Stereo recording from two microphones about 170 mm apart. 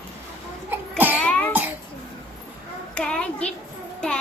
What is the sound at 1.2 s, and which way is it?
Cough, 10° left (ahead or behind).